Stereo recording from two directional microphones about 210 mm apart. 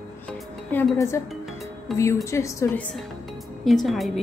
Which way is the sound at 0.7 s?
10° left (ahead or behind).